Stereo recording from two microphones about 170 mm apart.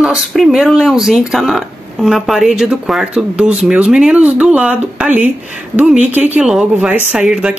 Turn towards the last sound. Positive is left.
turn(degrees=-5)  # may be behind; listen again after turning